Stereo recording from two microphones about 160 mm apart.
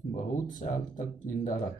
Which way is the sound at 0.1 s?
50° left (ahead or behind).